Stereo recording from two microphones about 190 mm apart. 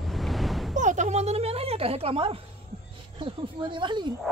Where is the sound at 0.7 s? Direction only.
40° right (ahead or behind).